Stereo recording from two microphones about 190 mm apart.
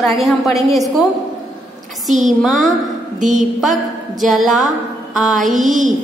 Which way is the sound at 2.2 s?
Centre (ahead or behind).